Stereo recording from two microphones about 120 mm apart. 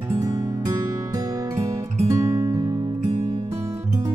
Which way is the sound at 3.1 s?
55° right (ahead or behind).